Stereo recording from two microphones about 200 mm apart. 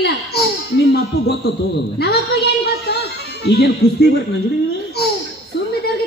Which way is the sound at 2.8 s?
55° left (ahead or behind).